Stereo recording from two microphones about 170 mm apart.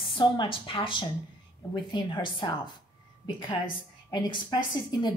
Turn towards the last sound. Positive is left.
turn(degrees=25)  # may be behind; listen again after turning